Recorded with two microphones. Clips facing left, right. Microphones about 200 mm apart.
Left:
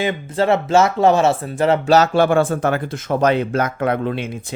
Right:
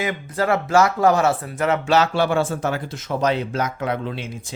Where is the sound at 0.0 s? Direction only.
25° left (ahead or behind).